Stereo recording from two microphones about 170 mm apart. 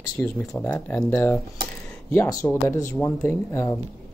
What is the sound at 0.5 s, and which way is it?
Speech, 10° left (ahead or behind).